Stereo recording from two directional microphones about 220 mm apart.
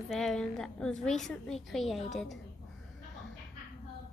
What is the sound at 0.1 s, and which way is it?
A woman's voice, centre (ahead or behind).